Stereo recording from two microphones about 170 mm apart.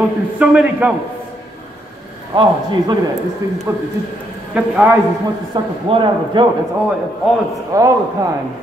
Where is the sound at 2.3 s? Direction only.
30° right (ahead or behind).